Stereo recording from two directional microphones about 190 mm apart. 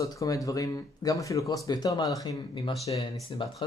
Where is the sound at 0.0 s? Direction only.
15° left (ahead or behind).